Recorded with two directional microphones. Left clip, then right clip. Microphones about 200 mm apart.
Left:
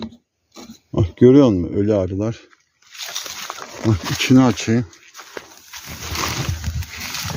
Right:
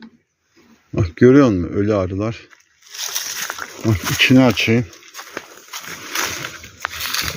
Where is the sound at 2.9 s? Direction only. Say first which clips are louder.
Right 3 dB; 50° right (ahead or behind).